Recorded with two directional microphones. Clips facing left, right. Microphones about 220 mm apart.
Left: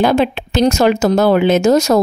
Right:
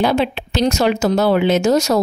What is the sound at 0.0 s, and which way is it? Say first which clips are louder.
Speech: left 3 dB; 50° left (ahead or behind).